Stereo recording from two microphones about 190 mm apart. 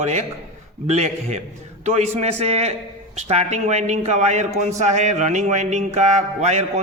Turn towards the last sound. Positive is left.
turn(degrees=-35)  # may be behind; listen again after turning